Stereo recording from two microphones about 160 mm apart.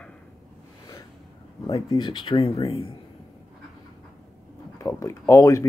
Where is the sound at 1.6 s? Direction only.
25° left (ahead or behind).